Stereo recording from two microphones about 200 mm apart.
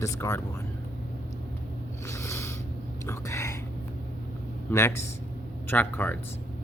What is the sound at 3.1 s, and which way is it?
Whispering, 15° left (ahead or behind).